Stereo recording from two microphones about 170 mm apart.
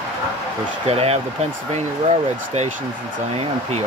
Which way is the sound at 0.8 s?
35° right (ahead or behind).